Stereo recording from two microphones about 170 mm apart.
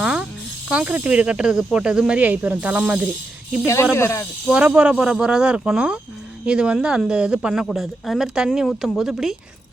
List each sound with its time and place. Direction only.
0.0 s tambourine: 5° right (ahead or behind)
0.7 s speech: 5° right (ahead or behind)
3.9 s speech: 15° left (ahead or behind)
4.4 s speech: 5° right (ahead or behind)